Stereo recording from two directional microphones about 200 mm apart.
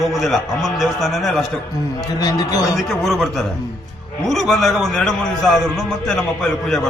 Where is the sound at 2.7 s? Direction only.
Centre (ahead or behind).